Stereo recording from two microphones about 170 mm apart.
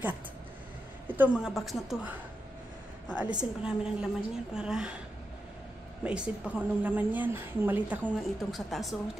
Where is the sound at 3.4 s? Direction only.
5° right (ahead or behind).